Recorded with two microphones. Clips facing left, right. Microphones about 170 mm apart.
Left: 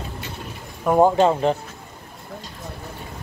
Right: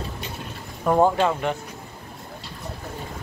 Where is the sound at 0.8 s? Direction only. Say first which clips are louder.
Left 2 dB; 15° left (ahead or behind).